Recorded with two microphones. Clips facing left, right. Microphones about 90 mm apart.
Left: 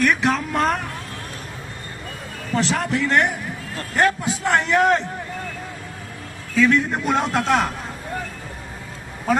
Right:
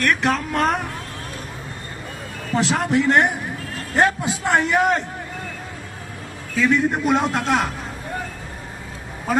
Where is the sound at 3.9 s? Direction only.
15° right (ahead or behind).